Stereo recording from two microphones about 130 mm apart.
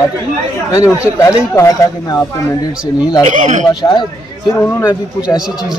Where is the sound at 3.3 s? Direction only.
65° right (ahead or behind).